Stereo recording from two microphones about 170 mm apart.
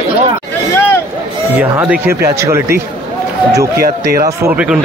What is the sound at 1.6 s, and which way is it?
Speech, 10° right (ahead or behind).